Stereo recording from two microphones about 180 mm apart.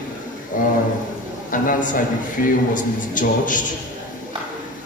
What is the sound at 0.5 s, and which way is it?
A man's voice, 50° left (ahead or behind).